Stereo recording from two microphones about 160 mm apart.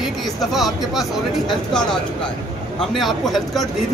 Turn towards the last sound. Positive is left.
turn(degrees=0)  # may be behind; listen again after turning